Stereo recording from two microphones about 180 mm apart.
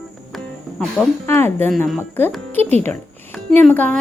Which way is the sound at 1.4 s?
10° left (ahead or behind).